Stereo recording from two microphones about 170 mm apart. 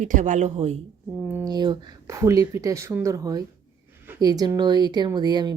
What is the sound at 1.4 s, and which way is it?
Speech, 25° right (ahead or behind).